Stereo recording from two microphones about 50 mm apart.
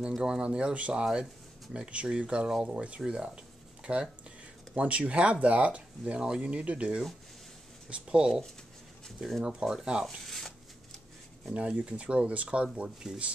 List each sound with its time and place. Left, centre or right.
0.2 s speech: centre
9.4 s speech: centre
10.0 s speech: centre
11.5 s speech: right
12.7 s speech: centre